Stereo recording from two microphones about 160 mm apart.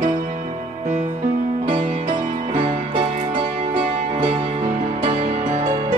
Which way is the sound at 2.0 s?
40° right (ahead or behind).